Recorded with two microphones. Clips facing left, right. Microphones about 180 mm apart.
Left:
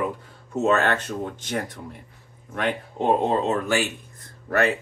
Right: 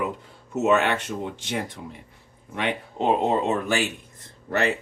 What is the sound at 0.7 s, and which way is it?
Speech, 15° right (ahead or behind).